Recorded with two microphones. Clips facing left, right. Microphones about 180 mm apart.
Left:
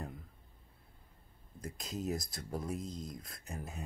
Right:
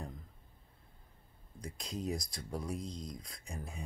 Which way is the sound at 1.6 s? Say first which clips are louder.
Left 1 dB; 5° left (ahead or behind).